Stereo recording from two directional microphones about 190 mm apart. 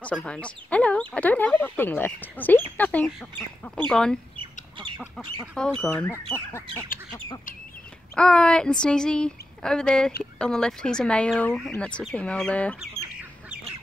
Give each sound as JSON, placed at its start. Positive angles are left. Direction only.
{"t": 0.0, "sound": "speech", "side_deg": 5}
{"t": 4.4, "sound": "chicken", "side_deg": -25}
{"t": 5.5, "sound": "speech", "side_deg": 5}
{"t": 8.1, "sound": "speech", "side_deg": 5}